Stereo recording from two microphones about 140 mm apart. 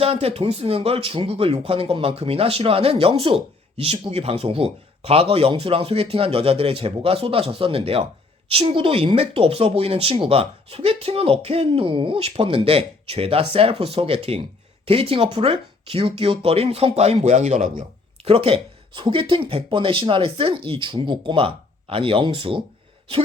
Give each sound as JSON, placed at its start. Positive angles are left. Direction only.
{"t": 0.0, "sound": "speech", "side_deg": -45}
{"t": 18.3, "sound": "speech", "side_deg": -40}